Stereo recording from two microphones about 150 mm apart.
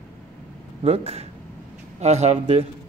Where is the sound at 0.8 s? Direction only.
40° right (ahead or behind).